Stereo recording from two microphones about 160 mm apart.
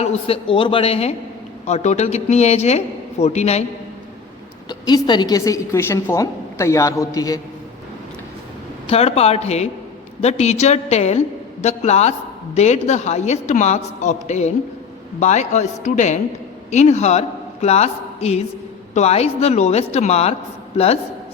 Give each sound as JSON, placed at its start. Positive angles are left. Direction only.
{"t": 0.0, "sound": "a woman's voice", "side_deg": 40}
{"t": 4.7, "sound": "a woman's voice", "side_deg": 25}
{"t": 8.9, "sound": "a woman's voice", "side_deg": 40}